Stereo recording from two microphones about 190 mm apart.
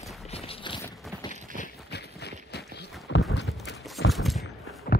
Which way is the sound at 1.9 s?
60° left (ahead or behind).